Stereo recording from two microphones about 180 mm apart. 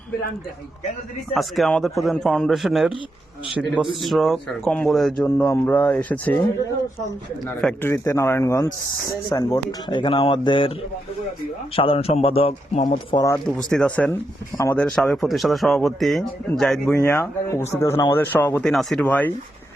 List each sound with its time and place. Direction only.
1.3 s speech: centre (ahead or behind)
4.0 s speech: centre (ahead or behind)
7.6 s speech: 10° left (ahead or behind); by 10.7 s 25° left (ahead or behind)
11.8 s a man's voice: 30° left (ahead or behind)
13.7 s speech: 5° left (ahead or behind)